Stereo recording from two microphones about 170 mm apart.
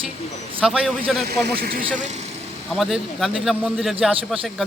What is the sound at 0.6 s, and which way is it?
Speech, centre (ahead or behind).